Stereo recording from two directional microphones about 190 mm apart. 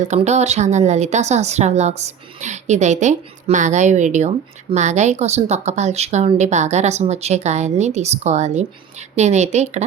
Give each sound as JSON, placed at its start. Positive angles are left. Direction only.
{"t": 0.1, "sound": "a woman's voice", "side_deg": -35}